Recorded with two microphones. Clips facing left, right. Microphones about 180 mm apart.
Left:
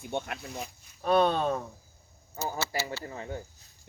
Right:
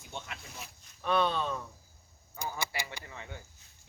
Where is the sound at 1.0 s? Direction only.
45° left (ahead or behind).